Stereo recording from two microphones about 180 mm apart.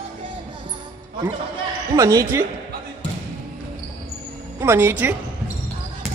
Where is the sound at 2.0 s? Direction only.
15° right (ahead or behind).